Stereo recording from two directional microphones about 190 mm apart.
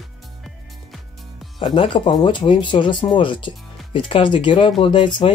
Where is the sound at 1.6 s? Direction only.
25° left (ahead or behind).